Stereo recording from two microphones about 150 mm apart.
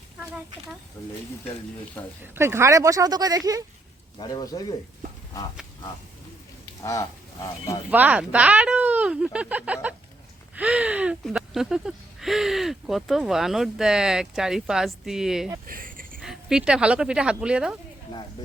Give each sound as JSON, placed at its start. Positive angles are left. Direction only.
{"t": 2.0, "sound": "speech", "side_deg": 10}
{"t": 2.3, "sound": "speech", "side_deg": -15}
{"t": 4.2, "sound": "speech", "side_deg": 30}
{"t": 7.9, "sound": "speech", "side_deg": -10}
{"t": 15.6, "sound": "a sound", "side_deg": -70}
{"t": 16.2, "sound": "speech", "side_deg": -5}